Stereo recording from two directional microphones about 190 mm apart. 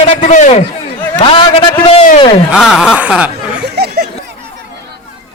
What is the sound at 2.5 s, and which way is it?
Speech, 5° right (ahead or behind).